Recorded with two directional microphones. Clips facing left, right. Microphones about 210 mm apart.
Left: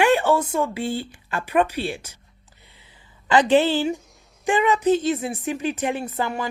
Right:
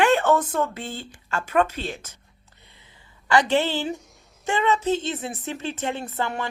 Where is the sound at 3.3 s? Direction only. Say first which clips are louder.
Left 4 dB; 20° left (ahead or behind).